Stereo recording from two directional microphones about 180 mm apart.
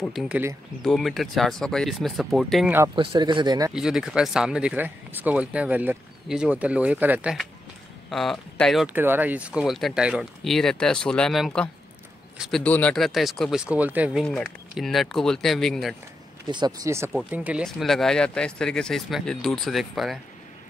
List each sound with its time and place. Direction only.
0.0 s speech: centre (ahead or behind)
3.0 s speech: 30° right (ahead or behind)
3.7 s speech: centre (ahead or behind)
8.8 s speech: 10° right (ahead or behind)
14.2 s speech: 5° left (ahead or behind)
16.4 s speech: 25° right (ahead or behind)
17.1 s speech: 5° right (ahead or behind)